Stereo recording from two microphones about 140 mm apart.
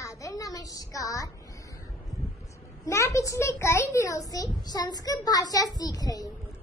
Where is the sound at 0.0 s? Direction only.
25° left (ahead or behind).